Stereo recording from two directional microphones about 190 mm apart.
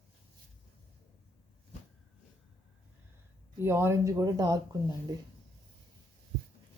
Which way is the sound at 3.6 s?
15° right (ahead or behind).